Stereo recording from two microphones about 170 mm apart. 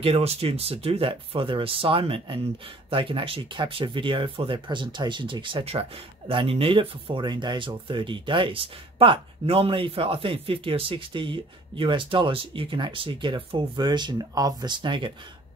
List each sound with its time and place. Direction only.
0.0 s speech: 35° right (ahead or behind)